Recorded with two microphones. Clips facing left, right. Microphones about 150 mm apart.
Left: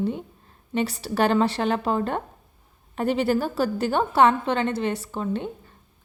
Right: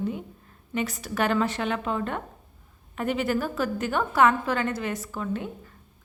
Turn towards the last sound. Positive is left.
turn(degrees=30)  # may be behind; listen again after turning